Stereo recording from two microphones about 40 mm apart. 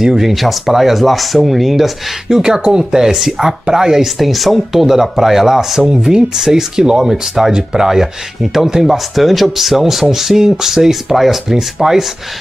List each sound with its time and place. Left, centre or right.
0.0 s speech: centre
2.2 s speech: centre
4.2 s speech: centre
5.9 s speech: centre